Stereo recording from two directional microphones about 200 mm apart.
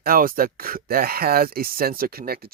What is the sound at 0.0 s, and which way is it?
Speech, 45° right (ahead or behind).